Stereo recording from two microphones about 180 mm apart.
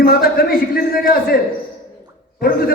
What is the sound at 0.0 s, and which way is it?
A man's voice, 55° left (ahead or behind).